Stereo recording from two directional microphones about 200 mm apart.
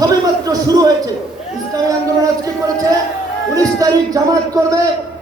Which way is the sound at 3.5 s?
15° right (ahead or behind).